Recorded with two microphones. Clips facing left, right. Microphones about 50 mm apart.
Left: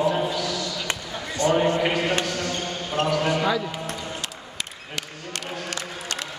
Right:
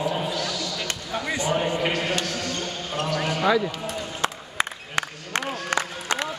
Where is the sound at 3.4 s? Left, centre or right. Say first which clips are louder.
Right 3 dB; centre.